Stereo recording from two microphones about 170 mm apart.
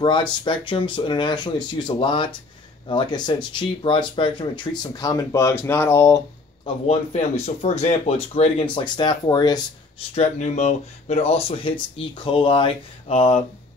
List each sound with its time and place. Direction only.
0.0 s speech: 30° left (ahead or behind)
6.6 s speech: 35° left (ahead or behind)
10.1 s speech: 40° left (ahead or behind)